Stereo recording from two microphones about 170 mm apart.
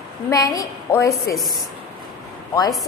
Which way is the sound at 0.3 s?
20° left (ahead or behind).